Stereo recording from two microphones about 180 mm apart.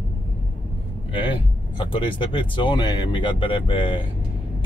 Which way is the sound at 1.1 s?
25° left (ahead or behind).